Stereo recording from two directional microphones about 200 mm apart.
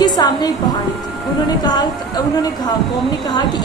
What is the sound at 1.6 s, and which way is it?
Speech, 20° left (ahead or behind).